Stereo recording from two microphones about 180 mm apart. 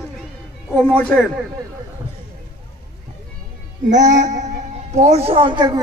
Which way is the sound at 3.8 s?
45° right (ahead or behind).